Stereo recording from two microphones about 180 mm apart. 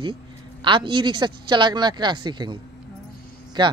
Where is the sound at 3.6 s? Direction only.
25° right (ahead or behind).